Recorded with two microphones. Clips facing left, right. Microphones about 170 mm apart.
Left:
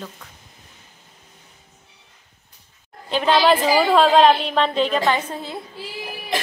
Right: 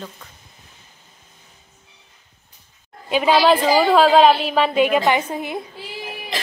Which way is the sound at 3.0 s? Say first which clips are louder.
Right 2 dB; 10° right (ahead or behind).